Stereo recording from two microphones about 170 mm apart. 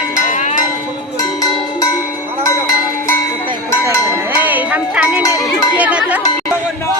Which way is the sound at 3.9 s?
15° left (ahead or behind).